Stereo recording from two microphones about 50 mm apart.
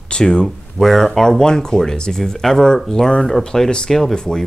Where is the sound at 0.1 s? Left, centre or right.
Centre.